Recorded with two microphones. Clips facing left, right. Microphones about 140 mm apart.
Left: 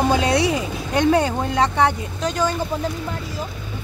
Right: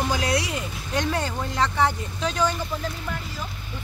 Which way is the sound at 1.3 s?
60° left (ahead or behind).